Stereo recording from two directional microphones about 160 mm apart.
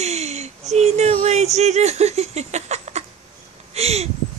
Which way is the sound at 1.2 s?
45° right (ahead or behind).